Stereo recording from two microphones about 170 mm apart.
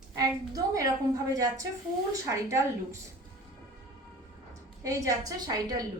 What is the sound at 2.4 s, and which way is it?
Speech, 15° right (ahead or behind).